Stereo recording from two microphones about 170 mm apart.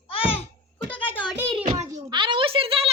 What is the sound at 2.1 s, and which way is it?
Speech, 30° right (ahead or behind).